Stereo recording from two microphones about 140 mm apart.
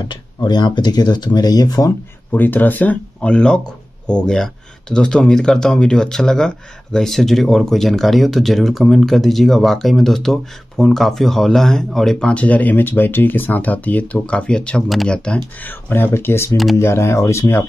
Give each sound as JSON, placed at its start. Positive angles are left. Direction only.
{"t": 0.1, "sound": "speech", "side_deg": 30}
{"t": 2.3, "sound": "speech", "side_deg": 15}